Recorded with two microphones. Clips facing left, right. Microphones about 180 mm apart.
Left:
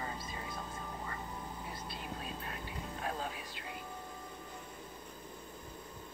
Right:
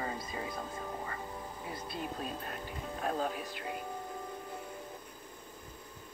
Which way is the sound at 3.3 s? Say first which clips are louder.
Right 6 dB; 50° right (ahead or behind).